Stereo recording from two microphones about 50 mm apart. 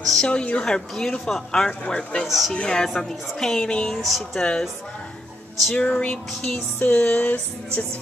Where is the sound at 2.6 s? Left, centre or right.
Centre.